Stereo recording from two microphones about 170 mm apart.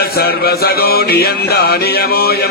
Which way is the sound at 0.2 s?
65° left (ahead or behind).